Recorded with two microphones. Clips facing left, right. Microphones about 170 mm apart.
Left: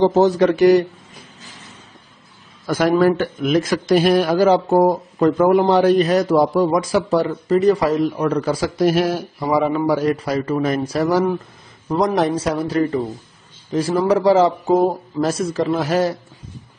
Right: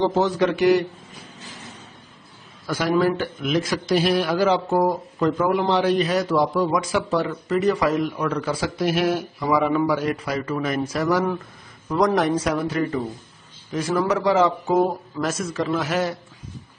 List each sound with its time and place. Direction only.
0.0 s a man's voice: 40° left (ahead or behind)
2.6 s a man's voice: 45° left (ahead or behind)